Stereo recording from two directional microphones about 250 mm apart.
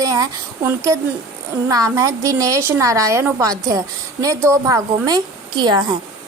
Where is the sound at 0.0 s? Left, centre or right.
Centre.